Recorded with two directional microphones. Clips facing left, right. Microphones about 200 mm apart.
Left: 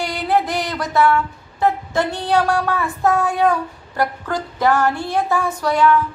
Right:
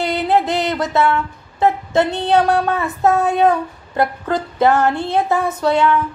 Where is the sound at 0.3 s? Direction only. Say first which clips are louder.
Right 1 dB; 20° right (ahead or behind).